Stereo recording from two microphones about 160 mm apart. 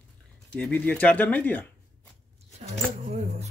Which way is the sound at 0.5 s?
5° left (ahead or behind).